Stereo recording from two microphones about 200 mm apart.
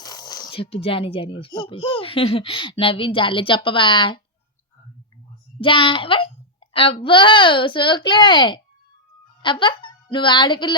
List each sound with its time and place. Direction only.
0.0 s speech: 20° left (ahead or behind)
5.5 s a woman's voice: 25° left (ahead or behind)